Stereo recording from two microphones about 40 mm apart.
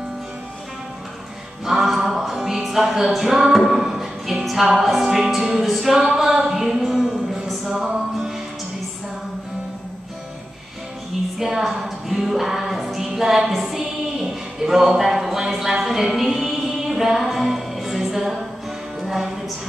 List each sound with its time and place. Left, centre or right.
1.7 s music: centre
4.8 s a sound: centre
7.7 s music: centre
11.3 s a sound: centre
12.2 s music: centre
14.2 s speech: centre
15.7 s music: centre